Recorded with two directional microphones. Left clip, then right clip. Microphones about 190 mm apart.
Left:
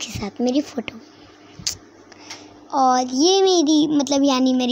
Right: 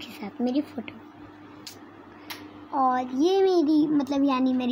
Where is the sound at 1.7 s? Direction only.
35° left (ahead or behind).